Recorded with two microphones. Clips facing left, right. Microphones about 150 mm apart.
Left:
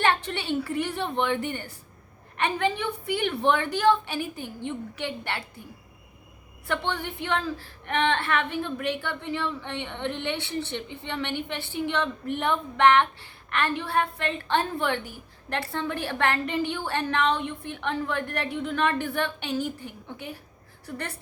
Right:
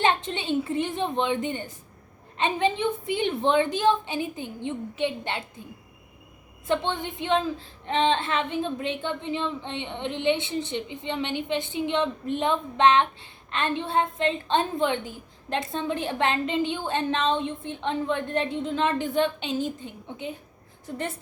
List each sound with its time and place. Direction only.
0.0 s a woman's voice: 20° right (ahead or behind)
6.7 s a woman's voice: 20° right (ahead or behind)